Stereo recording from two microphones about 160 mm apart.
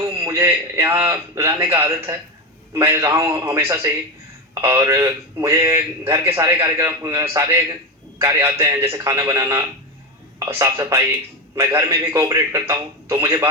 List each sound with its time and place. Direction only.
0.0 s a man's voice: 20° right (ahead or behind)